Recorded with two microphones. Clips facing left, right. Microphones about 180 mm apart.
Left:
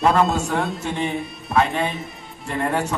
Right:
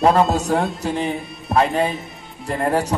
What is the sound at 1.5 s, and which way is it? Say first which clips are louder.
Music: right 3 dB; 40° right (ahead or behind).